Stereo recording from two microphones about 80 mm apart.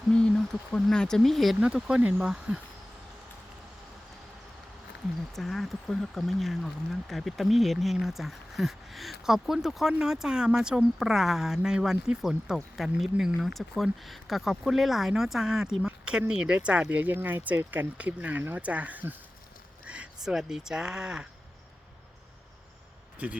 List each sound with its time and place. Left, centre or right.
0.1 s a sound: centre
0.7 s speech: centre
1.6 s speech: centre
5.3 s speech: centre
23.1 s speech: centre